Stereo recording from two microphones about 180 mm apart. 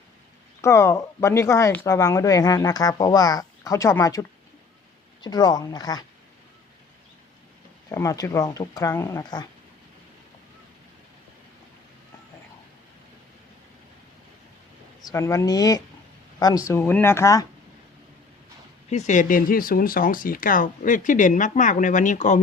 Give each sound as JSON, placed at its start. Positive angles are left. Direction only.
{"t": 0.6, "sound": "speech", "side_deg": 15}
{"t": 7.9, "sound": "speech", "side_deg": 20}
{"t": 15.0, "sound": "speech", "side_deg": 15}
{"t": 18.9, "sound": "speech", "side_deg": 40}